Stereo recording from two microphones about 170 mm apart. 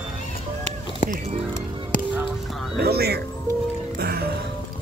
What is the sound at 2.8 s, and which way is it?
Speech, 65° right (ahead or behind).